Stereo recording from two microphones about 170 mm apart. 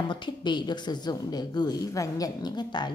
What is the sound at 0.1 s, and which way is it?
A woman's voice, 25° left (ahead or behind).